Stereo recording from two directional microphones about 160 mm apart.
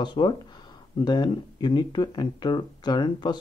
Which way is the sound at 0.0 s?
30° left (ahead or behind).